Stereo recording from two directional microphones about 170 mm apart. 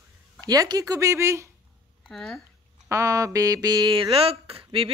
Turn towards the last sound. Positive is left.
turn(degrees=-35)  # may be behind; listen again after turning